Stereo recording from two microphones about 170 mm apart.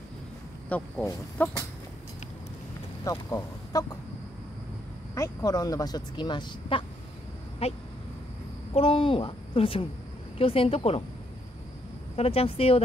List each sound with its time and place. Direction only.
0.7 s speech: 10° left (ahead or behind)
3.0 s speech: 20° left (ahead or behind)
5.1 s a woman's voice: 20° left (ahead or behind)
12.2 s a woman's voice: 35° left (ahead or behind)